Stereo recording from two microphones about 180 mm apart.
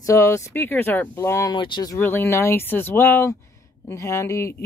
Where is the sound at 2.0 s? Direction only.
10° left (ahead or behind).